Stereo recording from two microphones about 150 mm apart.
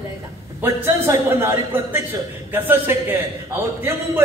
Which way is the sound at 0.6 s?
15° right (ahead or behind).